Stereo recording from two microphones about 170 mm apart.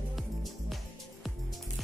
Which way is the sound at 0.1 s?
Centre (ahead or behind).